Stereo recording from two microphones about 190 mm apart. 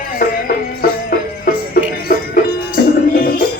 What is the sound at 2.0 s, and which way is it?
Music, 50° left (ahead or behind).